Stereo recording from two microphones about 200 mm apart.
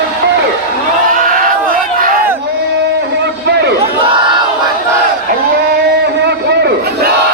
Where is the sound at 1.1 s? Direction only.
45° right (ahead or behind).